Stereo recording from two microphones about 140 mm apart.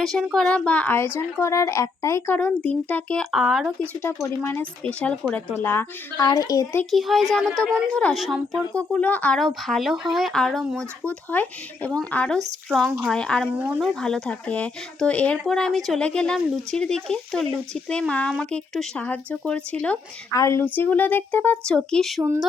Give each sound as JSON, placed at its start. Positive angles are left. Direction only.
{"t": 0.0, "sound": "speech", "side_deg": 5}
{"t": 4.0, "sound": "speech", "side_deg": 15}
{"t": 6.1, "sound": "speech", "side_deg": 25}
{"t": 6.9, "sound": "speech", "side_deg": 0}
{"t": 8.7, "sound": "speech", "side_deg": 10}
{"t": 12.7, "sound": "speech", "side_deg": -10}
{"t": 13.1, "sound": "speech", "side_deg": 5}
{"t": 13.6, "sound": "speech", "side_deg": -10}
{"t": 14.0, "sound": "speech", "side_deg": 5}
{"t": 20.3, "sound": "speech", "side_deg": 20}